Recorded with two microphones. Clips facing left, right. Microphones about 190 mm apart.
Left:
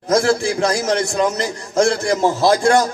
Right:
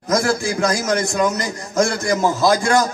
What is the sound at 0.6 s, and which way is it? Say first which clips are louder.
A man's voice: left 1 dB; 30° left (ahead or behind).